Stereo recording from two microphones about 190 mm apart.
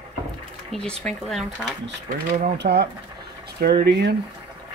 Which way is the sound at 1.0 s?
Centre (ahead or behind).